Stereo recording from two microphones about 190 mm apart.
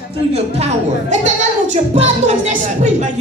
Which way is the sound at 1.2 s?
40° right (ahead or behind).